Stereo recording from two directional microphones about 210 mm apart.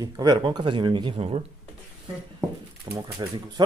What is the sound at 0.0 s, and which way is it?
Speech, 20° right (ahead or behind).